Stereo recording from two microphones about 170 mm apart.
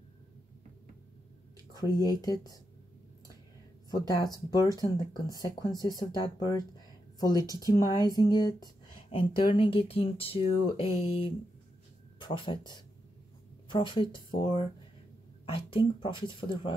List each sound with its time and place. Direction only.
1.7 s speech: 20° left (ahead or behind)
4.1 s speech: 25° left (ahead or behind)